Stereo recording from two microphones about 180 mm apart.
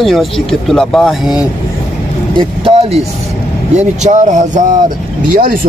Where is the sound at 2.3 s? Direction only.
30° right (ahead or behind).